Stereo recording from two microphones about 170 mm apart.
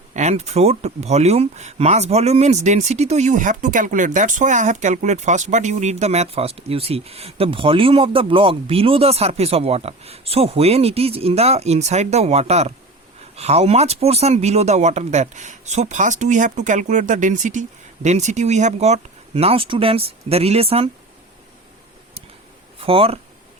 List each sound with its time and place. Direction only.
0.1 s speech: 40° right (ahead or behind)
22.8 s speech: 35° right (ahead or behind)